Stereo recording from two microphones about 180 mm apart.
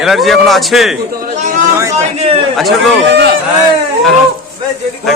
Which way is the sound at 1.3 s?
45° right (ahead or behind).